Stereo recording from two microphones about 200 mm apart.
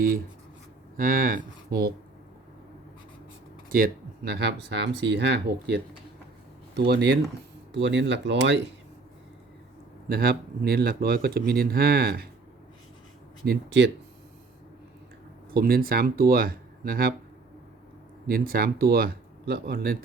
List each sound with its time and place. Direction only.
0.9 s speech: 45° right (ahead or behind)
3.8 s speech: 50° right (ahead or behind)
10.1 s speech: 50° right (ahead or behind)
13.4 s speech: 55° right (ahead or behind)
15.5 s speech: 50° right (ahead or behind)
18.3 s speech: 50° right (ahead or behind)